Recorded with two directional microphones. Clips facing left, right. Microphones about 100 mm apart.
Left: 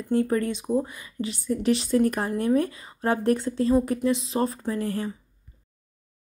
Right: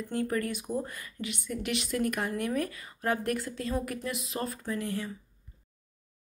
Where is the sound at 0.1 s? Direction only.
30° left (ahead or behind).